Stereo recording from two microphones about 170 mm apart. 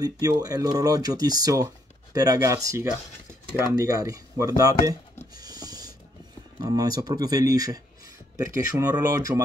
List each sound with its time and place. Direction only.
0.0 s speech: 20° right (ahead or behind)
5.3 s printer: 25° right (ahead or behind)
6.6 s speech: 20° right (ahead or behind)